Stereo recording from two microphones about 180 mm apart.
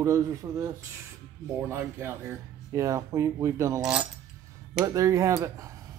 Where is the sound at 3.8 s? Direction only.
5° right (ahead or behind).